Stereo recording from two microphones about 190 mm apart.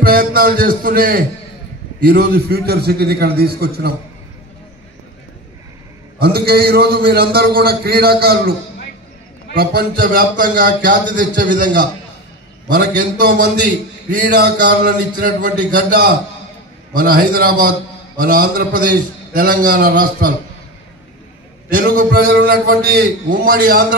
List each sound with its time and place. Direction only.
0.0 s a man's voice: 50° right (ahead or behind)
6.1 s a man's voice: 55° right (ahead or behind)
21.6 s a man's voice: 50° right (ahead or behind)